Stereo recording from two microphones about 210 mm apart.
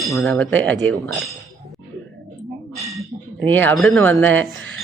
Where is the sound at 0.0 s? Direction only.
Centre (ahead or behind).